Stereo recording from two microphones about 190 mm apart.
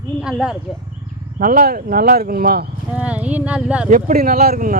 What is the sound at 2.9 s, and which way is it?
Speech, 5° right (ahead or behind).